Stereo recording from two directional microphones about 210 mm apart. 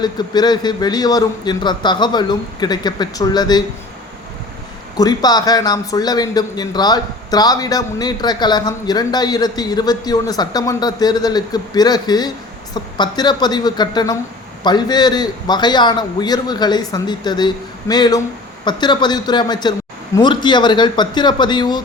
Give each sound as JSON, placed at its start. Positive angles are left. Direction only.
{"t": 0.0, "sound": "a man's voice", "side_deg": 20}
{"t": 4.9, "sound": "a man's voice", "side_deg": 20}